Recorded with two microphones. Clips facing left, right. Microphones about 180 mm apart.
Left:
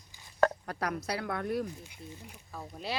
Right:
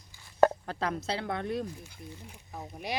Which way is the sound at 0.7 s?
25° right (ahead or behind).